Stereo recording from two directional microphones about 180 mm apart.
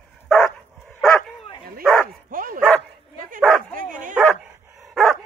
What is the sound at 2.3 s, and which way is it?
Dog, 50° right (ahead or behind).